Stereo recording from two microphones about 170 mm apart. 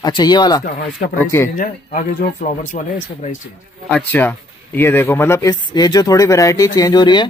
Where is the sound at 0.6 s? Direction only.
55° left (ahead or behind).